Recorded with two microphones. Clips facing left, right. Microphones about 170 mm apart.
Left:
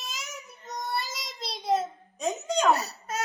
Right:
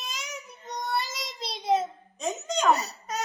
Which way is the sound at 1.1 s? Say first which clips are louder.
Right 1 dB; centre (ahead or behind).